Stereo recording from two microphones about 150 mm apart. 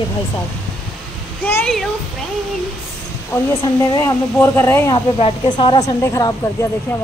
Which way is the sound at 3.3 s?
20° left (ahead or behind).